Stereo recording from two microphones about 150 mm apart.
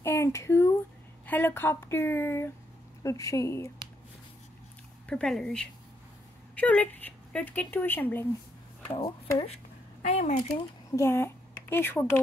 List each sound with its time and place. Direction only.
0.0 s a sound: 15° left (ahead or behind)
1.2 s a woman's voice: 10° left (ahead or behind)
5.0 s a woman's voice: 5° left (ahead or behind)
10.0 s speech: 55° left (ahead or behind)
10.5 s speech: 20° left (ahead or behind)